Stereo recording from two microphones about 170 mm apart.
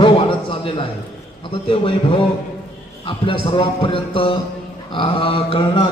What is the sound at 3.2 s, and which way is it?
A man's voice, 30° left (ahead or behind).